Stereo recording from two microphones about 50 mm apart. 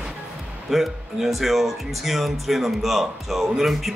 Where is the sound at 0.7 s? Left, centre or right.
Centre.